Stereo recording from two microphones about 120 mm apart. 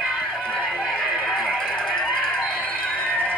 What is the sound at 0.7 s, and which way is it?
Music, 10° left (ahead or behind).